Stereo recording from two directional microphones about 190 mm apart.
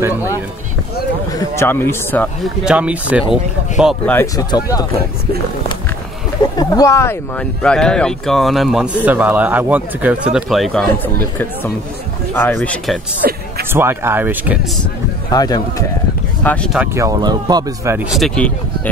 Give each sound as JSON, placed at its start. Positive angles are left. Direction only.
{"t": 1.3, "sound": "speech", "side_deg": 15}
{"t": 2.4, "sound": "speech", "side_deg": -5}
{"t": 4.1, "sound": "speech", "side_deg": 10}
{"t": 6.6, "sound": "speech", "side_deg": 15}
{"t": 13.2, "sound": "speech", "side_deg": -50}
{"t": 13.7, "sound": "speech", "side_deg": -10}
{"t": 15.3, "sound": "speech", "side_deg": 20}
{"t": 16.7, "sound": "speech", "side_deg": -10}